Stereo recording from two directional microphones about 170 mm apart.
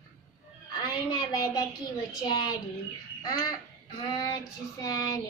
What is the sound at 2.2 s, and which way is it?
Child singing, 25° left (ahead or behind).